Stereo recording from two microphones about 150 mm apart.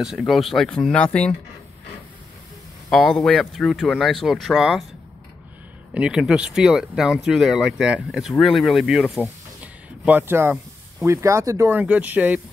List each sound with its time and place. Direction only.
0.0 s speech: centre (ahead or behind)
2.9 s speech: centre (ahead or behind)
5.9 s speech: 5° right (ahead or behind)